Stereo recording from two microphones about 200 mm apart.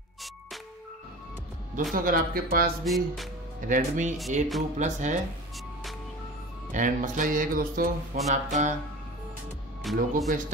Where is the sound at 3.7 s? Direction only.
40° right (ahead or behind).